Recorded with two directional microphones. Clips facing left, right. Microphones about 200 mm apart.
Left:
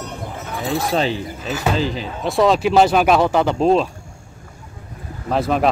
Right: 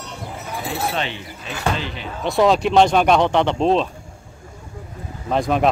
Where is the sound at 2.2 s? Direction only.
Centre (ahead or behind).